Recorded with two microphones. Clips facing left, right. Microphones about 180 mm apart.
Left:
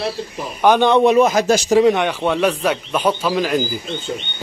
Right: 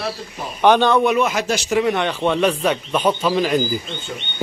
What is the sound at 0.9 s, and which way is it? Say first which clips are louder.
Speech: left 4 dB; 30° left (ahead or behind).